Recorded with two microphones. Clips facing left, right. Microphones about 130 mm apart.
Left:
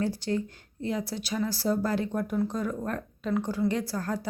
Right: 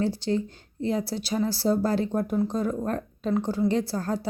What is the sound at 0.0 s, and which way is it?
A woman's voice, 25° right (ahead or behind).